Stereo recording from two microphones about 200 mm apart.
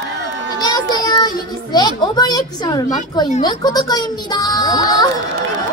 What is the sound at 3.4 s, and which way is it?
A child's voice, 20° left (ahead or behind).